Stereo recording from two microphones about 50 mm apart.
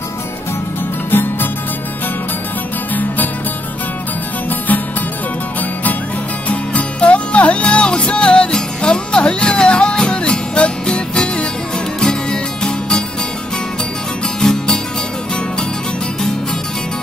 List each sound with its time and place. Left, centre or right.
1.1 s music: left
4.5 s music: left
6.5 s music: left
14.4 s music: centre